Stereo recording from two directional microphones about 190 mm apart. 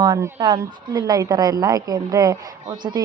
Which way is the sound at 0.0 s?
20° right (ahead or behind).